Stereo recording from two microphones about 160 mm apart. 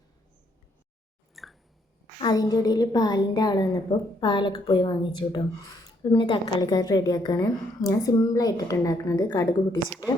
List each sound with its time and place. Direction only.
1.4 s chewing: centre (ahead or behind)
2.2 s a woman's voice: 25° left (ahead or behind)